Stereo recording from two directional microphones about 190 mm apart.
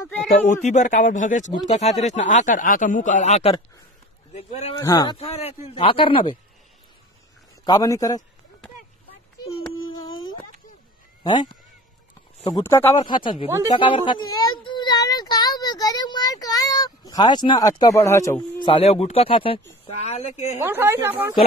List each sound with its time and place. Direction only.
0.5 s speech: 40° left (ahead or behind)
4.7 s speech: 20° left (ahead or behind)
5.1 s speech: 30° left (ahead or behind)
7.6 s speech: 20° left (ahead or behind)
12.4 s speech: 20° left (ahead or behind)
14.6 s child singing: 25° left (ahead or behind)
18.7 s speech: 30° left (ahead or behind)
20.6 s a woman's voice: 10° right (ahead or behind)